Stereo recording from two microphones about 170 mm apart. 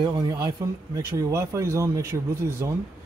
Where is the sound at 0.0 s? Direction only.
20° right (ahead or behind).